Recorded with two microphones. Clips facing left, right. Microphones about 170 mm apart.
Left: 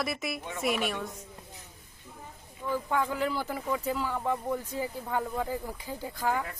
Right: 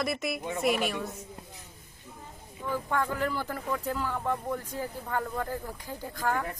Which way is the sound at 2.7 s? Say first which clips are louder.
Left 1 dB; 10° left (ahead or behind).